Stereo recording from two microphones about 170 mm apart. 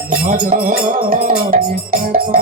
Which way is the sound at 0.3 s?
55° right (ahead or behind).